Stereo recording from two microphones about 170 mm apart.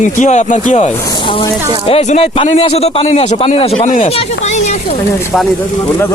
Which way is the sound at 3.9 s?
50° left (ahead or behind).